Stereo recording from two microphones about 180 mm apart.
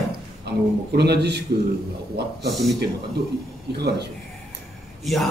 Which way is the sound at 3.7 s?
65° right (ahead or behind).